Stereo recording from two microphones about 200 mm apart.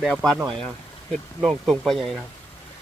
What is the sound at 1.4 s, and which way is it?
Speech, centre (ahead or behind).